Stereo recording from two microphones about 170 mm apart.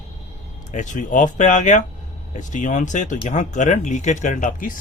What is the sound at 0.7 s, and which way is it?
A man's voice, 45° left (ahead or behind).